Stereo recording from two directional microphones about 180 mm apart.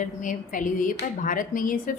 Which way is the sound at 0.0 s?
45° left (ahead or behind).